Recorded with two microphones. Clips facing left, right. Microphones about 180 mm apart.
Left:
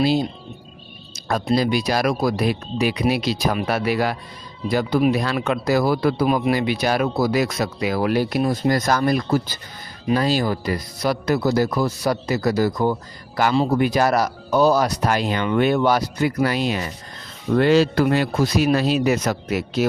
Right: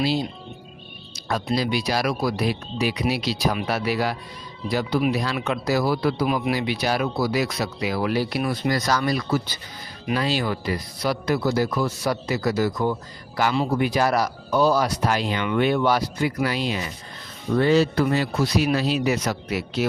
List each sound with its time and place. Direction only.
0.0 s speech: 50° left (ahead or behind)
1.5 s speech: 45° left (ahead or behind)
17.6 s speech: 90° left; by 19.9 s 45° left (ahead or behind)